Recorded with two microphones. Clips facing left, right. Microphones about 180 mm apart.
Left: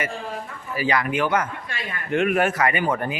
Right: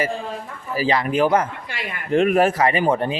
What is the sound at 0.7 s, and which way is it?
A man's voice, 30° right (ahead or behind).